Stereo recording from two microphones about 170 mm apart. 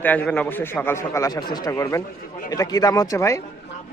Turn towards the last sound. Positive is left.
turn(degrees=20)  # may be behind; listen again after turning